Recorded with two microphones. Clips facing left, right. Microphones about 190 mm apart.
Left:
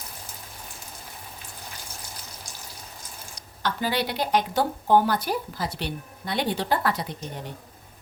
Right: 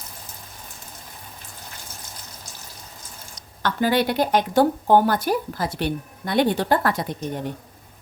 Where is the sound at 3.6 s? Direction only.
55° right (ahead or behind).